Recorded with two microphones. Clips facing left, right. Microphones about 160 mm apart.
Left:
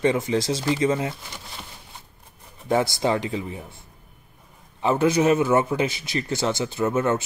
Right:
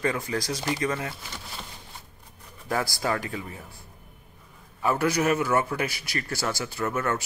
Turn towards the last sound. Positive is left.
turn(degrees=25)  # may be behind; listen again after turning